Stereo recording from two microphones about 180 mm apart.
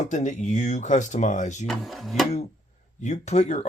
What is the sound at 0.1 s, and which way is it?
Speech, 40° left (ahead or behind).